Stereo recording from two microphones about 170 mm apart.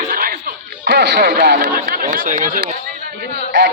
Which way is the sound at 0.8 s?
80° right.